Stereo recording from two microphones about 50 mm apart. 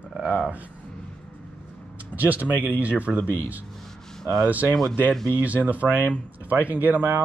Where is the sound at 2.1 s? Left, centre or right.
Right.